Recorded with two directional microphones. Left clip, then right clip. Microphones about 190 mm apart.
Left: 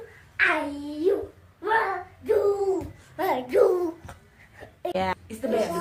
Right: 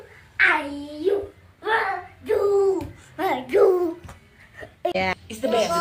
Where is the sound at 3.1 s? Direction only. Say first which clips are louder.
Right 2 dB; 15° left (ahead or behind).